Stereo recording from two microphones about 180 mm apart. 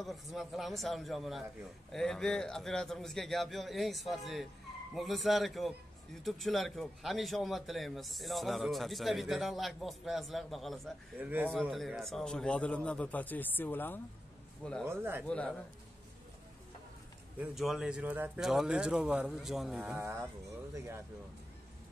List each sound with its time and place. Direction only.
0.0 s a man's voice: centre (ahead or behind)
14.9 s speech: 10° right (ahead or behind)
15.2 s a man's voice: 5° left (ahead or behind)
17.4 s a man's voice: centre (ahead or behind)
20.0 s speech: 15° right (ahead or behind)